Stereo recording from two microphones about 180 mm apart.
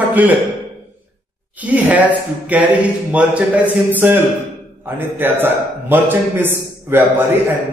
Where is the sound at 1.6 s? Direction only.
10° right (ahead or behind).